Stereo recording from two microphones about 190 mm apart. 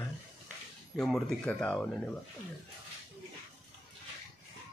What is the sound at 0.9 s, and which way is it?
Speech, centre (ahead or behind).